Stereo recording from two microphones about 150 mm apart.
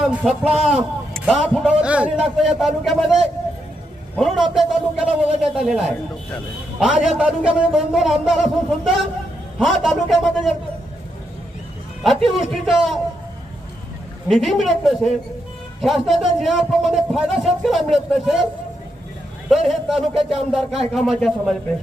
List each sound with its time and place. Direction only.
0.0 s a man's voice: 5° right (ahead or behind)
12.0 s a man's voice: centre (ahead or behind)
14.3 s a man's voice: centre (ahead or behind)
19.5 s a man's voice: centre (ahead or behind)